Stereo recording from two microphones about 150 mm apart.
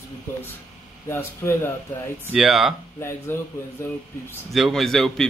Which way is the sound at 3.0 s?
15° left (ahead or behind).